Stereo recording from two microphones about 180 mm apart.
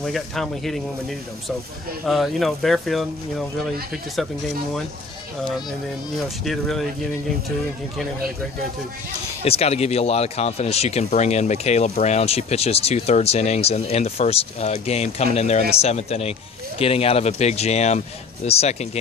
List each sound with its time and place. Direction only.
0.0 s speech: centre (ahead or behind)
2.0 s speech: centre (ahead or behind)
6.1 s speech: centre (ahead or behind)
9.4 s speech: 35° left (ahead or behind)